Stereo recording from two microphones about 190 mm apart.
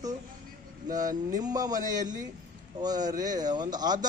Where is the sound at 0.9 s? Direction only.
20° right (ahead or behind).